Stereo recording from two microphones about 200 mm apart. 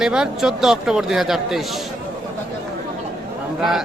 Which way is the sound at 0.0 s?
5° right (ahead or behind).